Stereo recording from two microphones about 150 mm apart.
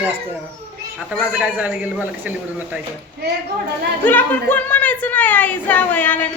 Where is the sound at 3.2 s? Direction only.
90° right.